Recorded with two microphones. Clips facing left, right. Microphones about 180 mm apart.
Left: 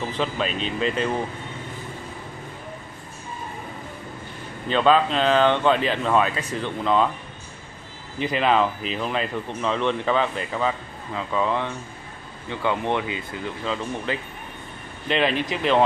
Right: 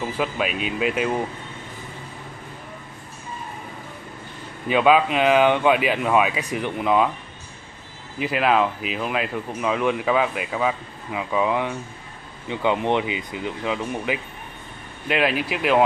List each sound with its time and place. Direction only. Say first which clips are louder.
0.1 s speech: right 1 dB; 10° right (ahead or behind)
4.6 s speech: right 1 dB; 10° right (ahead or behind)
8.2 s speech: right 1 dB; 5° right (ahead or behind)